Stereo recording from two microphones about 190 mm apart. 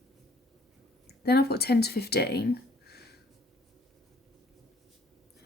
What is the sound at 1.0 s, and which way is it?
Speech, 55° left (ahead or behind).